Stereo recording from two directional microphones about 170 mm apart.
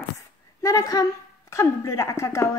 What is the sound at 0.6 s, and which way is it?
A woman's voice, 20° left (ahead or behind).